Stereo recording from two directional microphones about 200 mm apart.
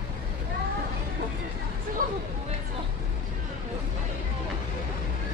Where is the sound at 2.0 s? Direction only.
45° right (ahead or behind).